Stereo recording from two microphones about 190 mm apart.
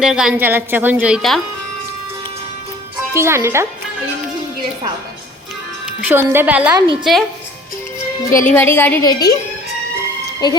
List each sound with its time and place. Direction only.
0.0 s a woman's voice: 5° right (ahead or behind)
3.1 s a woman's voice: 15° right (ahead or behind)
6.1 s a woman's voice: 10° right (ahead or behind)
8.4 s a woman's voice: 10° left (ahead or behind)
10.4 s speech: 20° left (ahead or behind)